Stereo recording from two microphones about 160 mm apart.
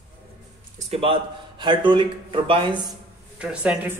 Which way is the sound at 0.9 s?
35° right (ahead or behind).